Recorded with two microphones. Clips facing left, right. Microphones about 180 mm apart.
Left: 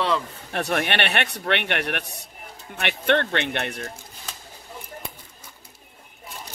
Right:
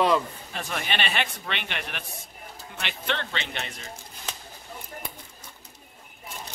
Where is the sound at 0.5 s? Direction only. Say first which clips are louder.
Left 11 dB; 65° left (ahead or behind).